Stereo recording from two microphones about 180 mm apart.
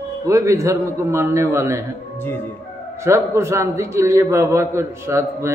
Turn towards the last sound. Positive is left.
turn(degrees=-15)  # may be behind; listen again after turning